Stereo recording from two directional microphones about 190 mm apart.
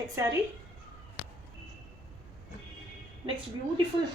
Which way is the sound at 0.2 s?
15° right (ahead or behind).